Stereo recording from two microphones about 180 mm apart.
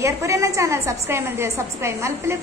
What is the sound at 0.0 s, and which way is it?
A woman's voice, 15° right (ahead or behind).